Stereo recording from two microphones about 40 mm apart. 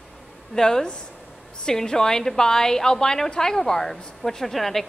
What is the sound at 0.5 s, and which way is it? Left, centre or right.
A woman's voice, centre.